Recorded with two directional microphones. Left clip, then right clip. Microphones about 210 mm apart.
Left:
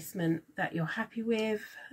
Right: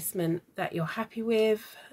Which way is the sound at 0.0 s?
50° right (ahead or behind).